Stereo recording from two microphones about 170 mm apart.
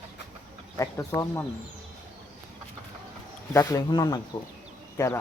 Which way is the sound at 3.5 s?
15° left (ahead or behind).